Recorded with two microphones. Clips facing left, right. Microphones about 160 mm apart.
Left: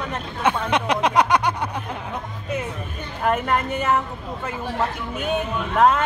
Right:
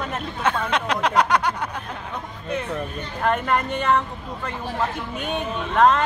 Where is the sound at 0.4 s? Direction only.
15° left (ahead or behind).